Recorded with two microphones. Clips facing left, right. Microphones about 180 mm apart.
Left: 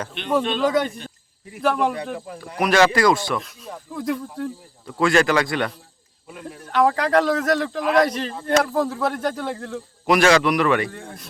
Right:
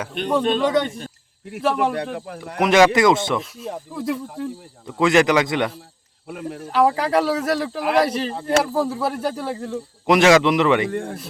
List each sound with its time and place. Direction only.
0.6 s speech: centre (ahead or behind)
2.6 s a man's voice: 20° right (ahead or behind)
3.9 s speech: 5° right (ahead or behind)
4.9 s a man's voice: 20° right (ahead or behind)
6.2 s speech: 65° right (ahead or behind)
6.7 s a man's voice: 5° right (ahead or behind)
10.1 s a man's voice: 20° right (ahead or behind)
10.9 s speech: 60° right (ahead or behind)